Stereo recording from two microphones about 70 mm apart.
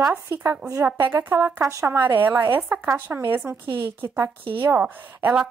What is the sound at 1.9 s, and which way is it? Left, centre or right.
A woman's voice, right.